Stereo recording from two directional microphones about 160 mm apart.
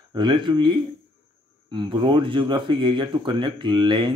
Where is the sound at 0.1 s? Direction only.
30° right (ahead or behind).